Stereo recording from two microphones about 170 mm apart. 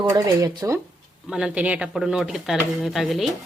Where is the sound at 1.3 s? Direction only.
5° right (ahead or behind).